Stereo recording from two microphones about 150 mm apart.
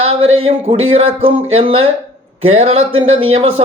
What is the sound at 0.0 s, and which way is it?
A man's voice, 40° right (ahead or behind).